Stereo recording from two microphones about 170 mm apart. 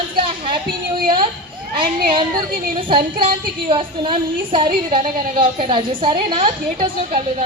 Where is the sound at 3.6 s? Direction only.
30° right (ahead or behind).